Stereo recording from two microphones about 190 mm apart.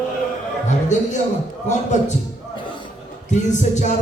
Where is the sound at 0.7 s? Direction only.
40° left (ahead or behind).